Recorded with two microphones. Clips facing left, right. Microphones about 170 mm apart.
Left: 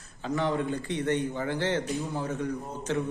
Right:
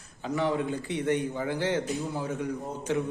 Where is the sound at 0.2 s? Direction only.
10° right (ahead or behind).